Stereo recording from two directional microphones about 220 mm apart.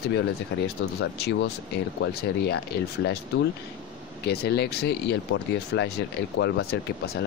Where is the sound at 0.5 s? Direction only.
55° left (ahead or behind).